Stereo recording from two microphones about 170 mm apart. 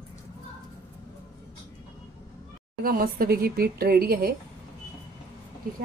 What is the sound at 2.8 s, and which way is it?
A woman's voice, 60° right (ahead or behind).